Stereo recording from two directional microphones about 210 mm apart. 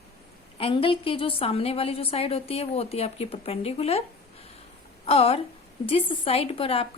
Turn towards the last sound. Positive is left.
turn(degrees=25)  # may be behind; listen again after turning